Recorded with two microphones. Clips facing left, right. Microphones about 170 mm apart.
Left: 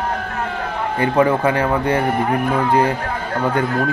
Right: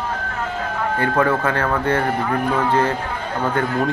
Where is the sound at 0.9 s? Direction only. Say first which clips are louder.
Left 4 dB; 20° left (ahead or behind).